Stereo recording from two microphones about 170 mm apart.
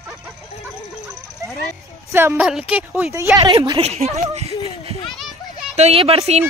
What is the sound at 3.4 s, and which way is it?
Speech, 25° right (ahead or behind).